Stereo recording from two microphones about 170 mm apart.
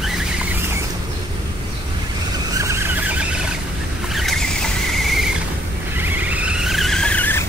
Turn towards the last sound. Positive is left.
turn(degrees=10)  # may be behind; listen again after turning